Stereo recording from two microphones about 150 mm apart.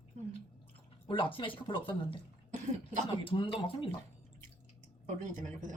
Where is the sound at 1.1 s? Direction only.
35° left (ahead or behind).